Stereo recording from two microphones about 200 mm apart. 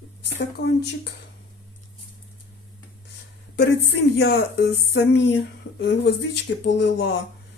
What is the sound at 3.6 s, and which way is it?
Speech, 55° left (ahead or behind).